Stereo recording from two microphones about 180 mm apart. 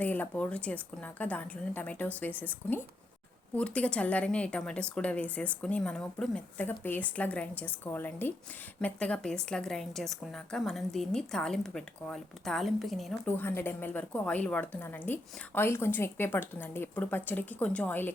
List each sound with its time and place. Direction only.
0.0 s a woman's voice: 10° left (ahead or behind)
13.2 s a woman's voice: 10° left (ahead or behind)